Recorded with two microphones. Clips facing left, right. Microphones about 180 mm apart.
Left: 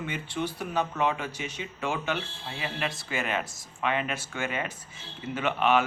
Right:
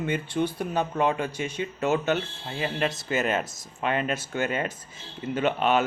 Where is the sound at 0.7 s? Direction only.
45° right (ahead or behind).